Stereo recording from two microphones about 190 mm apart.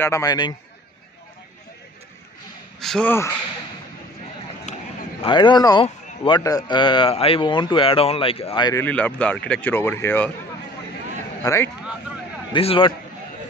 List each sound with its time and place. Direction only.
0.0 s a man's voice: 15° left (ahead or behind)
2.8 s speech: 5° left (ahead or behind)
4.7 s a sound: 40° left (ahead or behind)
5.2 s a man's voice: 25° left (ahead or behind)
8.8 s speech: 5° left (ahead or behind)
11.4 s speech: 15° left (ahead or behind)
12.5 s a man's voice: 30° left (ahead or behind)